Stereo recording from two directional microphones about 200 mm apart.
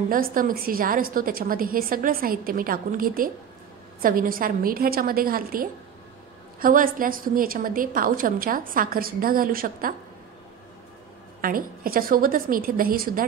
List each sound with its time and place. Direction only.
0.1 s a woman's voice: 45° right (ahead or behind)
11.4 s a woman's voice: 45° right (ahead or behind)